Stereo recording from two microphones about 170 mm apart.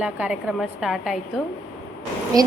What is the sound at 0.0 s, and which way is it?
A woman's voice, 5° right (ahead or behind).